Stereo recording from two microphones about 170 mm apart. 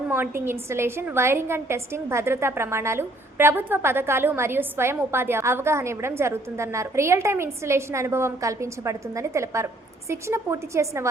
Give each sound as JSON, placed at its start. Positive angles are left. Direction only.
{"t": 0.1, "sound": "a woman's voice", "side_deg": -15}